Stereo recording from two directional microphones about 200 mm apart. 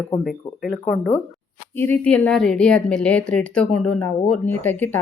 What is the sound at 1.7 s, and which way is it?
A woman's voice, 10° left (ahead or behind).